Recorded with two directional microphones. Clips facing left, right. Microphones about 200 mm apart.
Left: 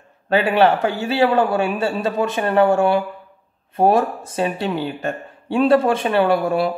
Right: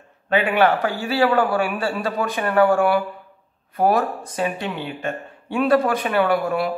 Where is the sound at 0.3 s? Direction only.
35° left (ahead or behind).